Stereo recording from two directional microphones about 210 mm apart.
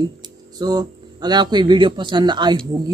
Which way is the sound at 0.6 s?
20° right (ahead or behind).